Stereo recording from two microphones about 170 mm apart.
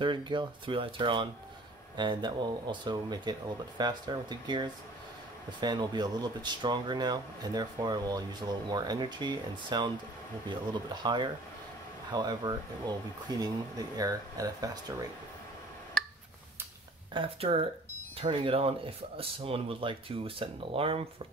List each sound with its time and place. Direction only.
0.0 s speech: 25° right (ahead or behind)
17.1 s speech: 35° right (ahead or behind)